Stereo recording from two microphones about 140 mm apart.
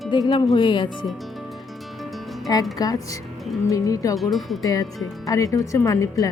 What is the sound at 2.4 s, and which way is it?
Speech, 25° left (ahead or behind).